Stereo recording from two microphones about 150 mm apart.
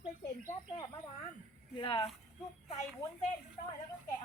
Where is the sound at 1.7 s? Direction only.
35° left (ahead or behind).